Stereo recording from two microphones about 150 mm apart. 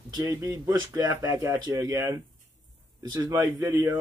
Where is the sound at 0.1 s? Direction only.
25° right (ahead or behind).